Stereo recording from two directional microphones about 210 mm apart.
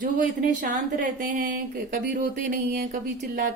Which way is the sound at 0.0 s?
40° right (ahead or behind).